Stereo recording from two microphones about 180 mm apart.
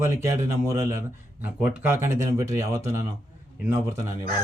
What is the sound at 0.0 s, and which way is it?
Speech, 15° right (ahead or behind).